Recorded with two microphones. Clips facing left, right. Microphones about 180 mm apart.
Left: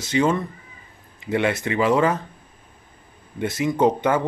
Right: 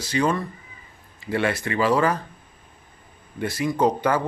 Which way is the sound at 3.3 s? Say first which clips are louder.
Left 2 dB; 20° left (ahead or behind).